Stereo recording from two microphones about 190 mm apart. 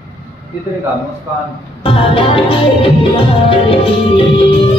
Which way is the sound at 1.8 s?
30° left (ahead or behind).